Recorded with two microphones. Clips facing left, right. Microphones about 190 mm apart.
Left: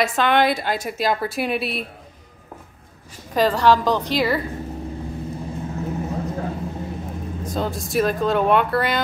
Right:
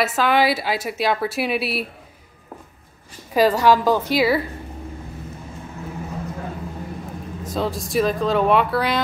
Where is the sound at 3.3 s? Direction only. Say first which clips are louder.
Right 1 dB; 10° right (ahead or behind).